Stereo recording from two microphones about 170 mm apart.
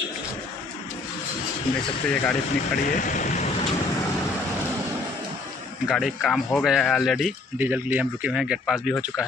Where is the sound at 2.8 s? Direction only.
50° left (ahead or behind).